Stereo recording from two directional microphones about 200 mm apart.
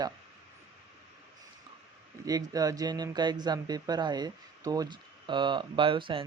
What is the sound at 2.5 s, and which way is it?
Speech, 20° right (ahead or behind).